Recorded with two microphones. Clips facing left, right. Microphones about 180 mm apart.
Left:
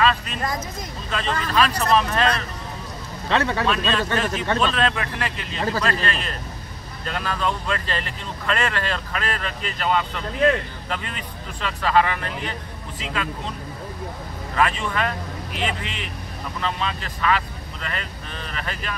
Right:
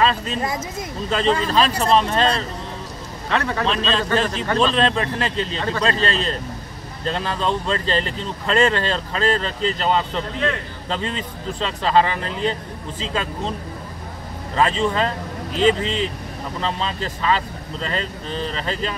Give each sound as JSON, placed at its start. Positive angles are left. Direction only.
{"t": 0.0, "sound": "speech", "side_deg": -30}
{"t": 0.4, "sound": "speech", "side_deg": -5}
{"t": 1.1, "sound": "speech", "side_deg": -30}
{"t": 3.3, "sound": "speech", "side_deg": 0}
{"t": 3.6, "sound": "speech", "side_deg": -30}
{"t": 14.5, "sound": "speech", "side_deg": -30}